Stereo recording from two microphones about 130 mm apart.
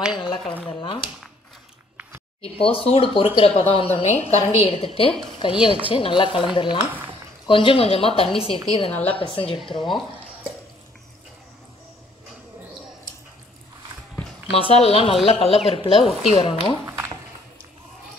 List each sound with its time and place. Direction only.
0.2 s a sound: 40° left (ahead or behind)
2.4 s speech: 50° left (ahead or behind)
4.0 s a woman's voice: 60° left (ahead or behind); by 9.6 s 45° left (ahead or behind)
9.6 s speech: centre (ahead or behind)
14.5 s speech: 50° left (ahead or behind)
16.1 s speech: 5° right (ahead or behind)
16.3 s speech: 45° left (ahead or behind)
16.8 s a sound: 15° right (ahead or behind)